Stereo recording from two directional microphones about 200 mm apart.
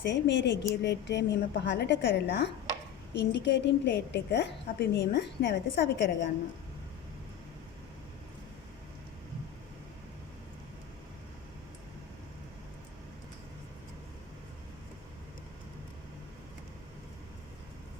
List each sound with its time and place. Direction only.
0.0 s a woman's voice: 60° left (ahead or behind)